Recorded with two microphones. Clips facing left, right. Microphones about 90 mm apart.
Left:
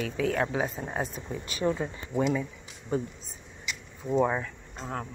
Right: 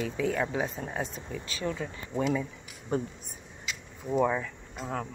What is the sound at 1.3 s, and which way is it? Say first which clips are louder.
Speech: left 5 dB; 20° left (ahead or behind).